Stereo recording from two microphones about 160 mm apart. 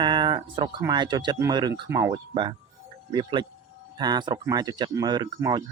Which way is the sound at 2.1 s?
30° right (ahead or behind).